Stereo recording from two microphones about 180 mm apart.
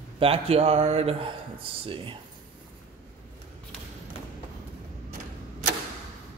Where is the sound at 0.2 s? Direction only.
35° right (ahead or behind).